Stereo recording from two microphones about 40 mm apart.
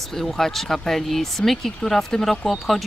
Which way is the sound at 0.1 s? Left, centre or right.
Centre.